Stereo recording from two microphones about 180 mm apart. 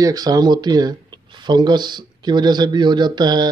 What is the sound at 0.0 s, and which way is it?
Speech, 20° right (ahead or behind).